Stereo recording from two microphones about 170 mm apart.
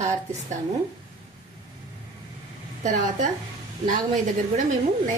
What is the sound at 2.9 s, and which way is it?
Speech, 50° right (ahead or behind).